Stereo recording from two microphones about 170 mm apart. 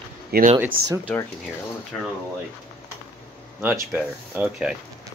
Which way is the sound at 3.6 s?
10° right (ahead or behind).